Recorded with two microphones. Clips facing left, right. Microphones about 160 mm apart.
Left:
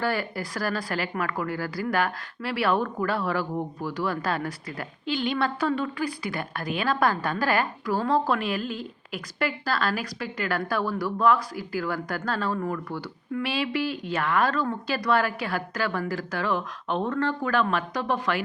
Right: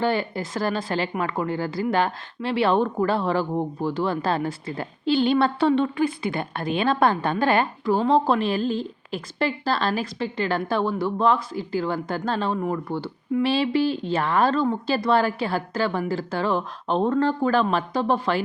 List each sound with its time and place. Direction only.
0.0 s a woman's voice: 20° right (ahead or behind)